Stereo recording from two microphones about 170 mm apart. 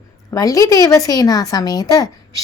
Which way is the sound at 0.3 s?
20° left (ahead or behind).